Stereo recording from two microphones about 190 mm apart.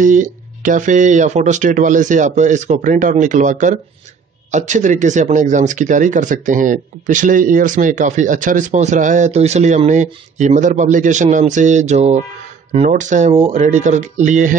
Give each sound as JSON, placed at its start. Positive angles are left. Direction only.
{"t": 0.0, "sound": "speech", "side_deg": -45}